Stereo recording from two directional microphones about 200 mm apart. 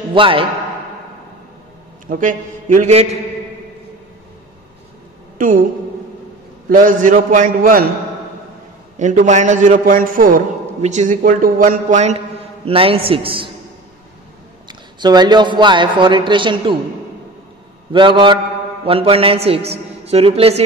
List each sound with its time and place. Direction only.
0.1 s a man's voice: 25° right (ahead or behind)
2.0 s a man's voice: 40° right (ahead or behind)
5.4 s a man's voice: 40° right (ahead or behind)
6.7 s a man's voice: 45° right (ahead or behind)
8.9 s a man's voice: 35° right (ahead or behind)
14.7 s a man's voice: 20° right (ahead or behind)
17.9 s a man's voice: 25° right (ahead or behind)